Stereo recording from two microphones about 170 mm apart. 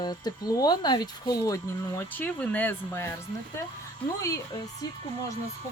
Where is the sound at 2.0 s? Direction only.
10° left (ahead or behind).